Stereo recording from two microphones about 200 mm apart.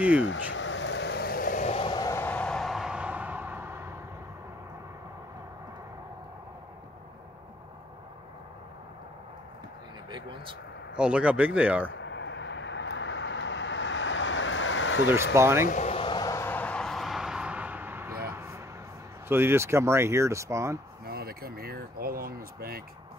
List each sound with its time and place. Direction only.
0.2 s vehicle: 70° left (ahead or behind); by 3.9 s 10° right (ahead or behind)
10.1 s vehicle: 25° right (ahead or behind)
11.0 s speech: 5° right (ahead or behind)
12.0 s vehicle: 65° left (ahead or behind)
15.3 s speech: 10° right (ahead or behind)
15.6 s vehicle: 40° left (ahead or behind); by 18.1 s 10° right (ahead or behind)
18.3 s a sound: 10° right (ahead or behind)
19.2 s speech: 10° right (ahead or behind)
21.0 s speech: 50° right (ahead or behind)